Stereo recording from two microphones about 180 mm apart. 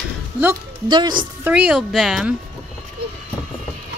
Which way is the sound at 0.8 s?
25° right (ahead or behind).